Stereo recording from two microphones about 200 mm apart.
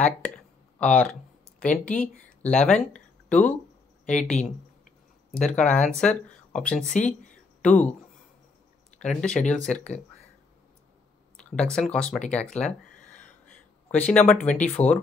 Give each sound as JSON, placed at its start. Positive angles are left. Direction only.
{"t": 0.7, "sound": "speech", "side_deg": 5}
{"t": 4.0, "sound": "speech", "side_deg": 35}
{"t": 5.9, "sound": "speech", "side_deg": 5}
{"t": 6.9, "sound": "speech", "side_deg": 40}
{"t": 7.6, "sound": "speech", "side_deg": 5}
{"t": 8.9, "sound": "speech", "side_deg": 5}
{"t": 11.3, "sound": "speech", "side_deg": 5}
{"t": 13.9, "sound": "speech", "side_deg": 5}